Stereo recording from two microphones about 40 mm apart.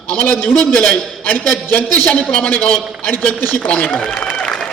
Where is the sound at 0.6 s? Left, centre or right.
Left.